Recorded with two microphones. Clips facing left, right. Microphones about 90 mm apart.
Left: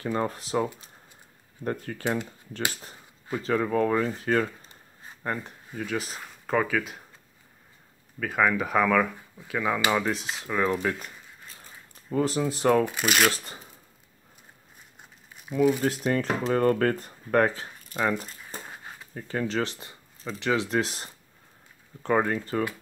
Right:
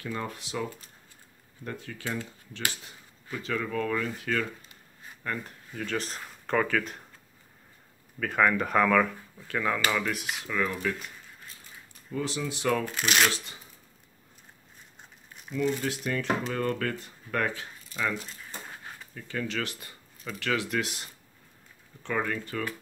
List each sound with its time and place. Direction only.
0.0 s speech: 35° left (ahead or behind)
2.8 s speech: 35° left (ahead or behind)
5.8 s speech: 5° left (ahead or behind)
8.2 s speech: 5° left (ahead or behind)
9.8 s speech: 30° left (ahead or behind)
11.6 s a sound: 40° left (ahead or behind)
12.8 s speech: 5° left (ahead or behind)
15.0 s crumpling: 5° left (ahead or behind)
15.8 s speech: 40° left (ahead or behind)
17.8 s a sound: 45° left (ahead or behind)
19.1 s speech: 35° left (ahead or behind)